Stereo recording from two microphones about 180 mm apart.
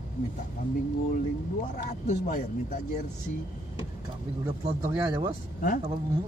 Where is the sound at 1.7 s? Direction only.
45° left (ahead or behind).